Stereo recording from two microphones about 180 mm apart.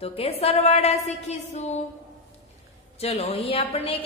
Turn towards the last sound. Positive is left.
turn(degrees=35)  # may be behind; listen again after turning